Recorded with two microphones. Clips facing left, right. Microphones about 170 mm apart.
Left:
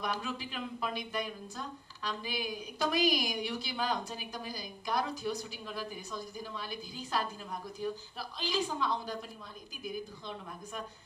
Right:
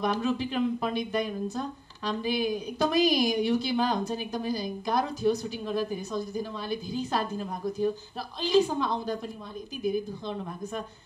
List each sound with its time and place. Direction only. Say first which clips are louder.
0.0 s a woman's voice: right 10 dB; 25° right (ahead or behind)
8.6 s a woman's voice: right 5 dB; 50° right (ahead or behind)